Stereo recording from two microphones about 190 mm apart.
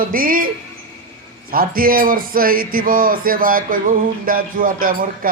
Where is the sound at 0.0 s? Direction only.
50° right (ahead or behind).